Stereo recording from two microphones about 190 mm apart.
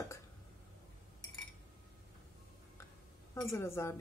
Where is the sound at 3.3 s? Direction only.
15° left (ahead or behind).